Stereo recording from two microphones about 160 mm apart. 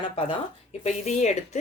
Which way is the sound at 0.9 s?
45° left (ahead or behind).